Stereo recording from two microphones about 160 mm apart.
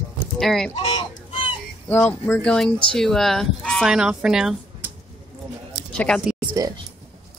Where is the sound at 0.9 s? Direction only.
30° left (ahead or behind).